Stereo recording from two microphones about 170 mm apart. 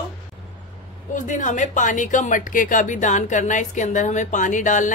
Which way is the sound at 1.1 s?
45° left (ahead or behind).